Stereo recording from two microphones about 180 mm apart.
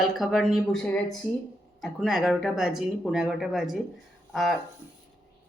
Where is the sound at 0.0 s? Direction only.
Centre (ahead or behind).